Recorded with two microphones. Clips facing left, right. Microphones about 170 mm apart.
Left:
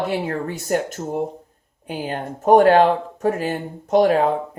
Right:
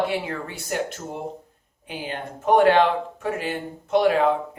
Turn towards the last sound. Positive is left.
turn(degrees=40)  # may be behind; listen again after turning